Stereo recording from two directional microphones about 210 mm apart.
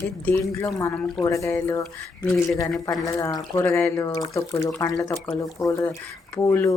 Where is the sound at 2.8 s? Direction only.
15° left (ahead or behind).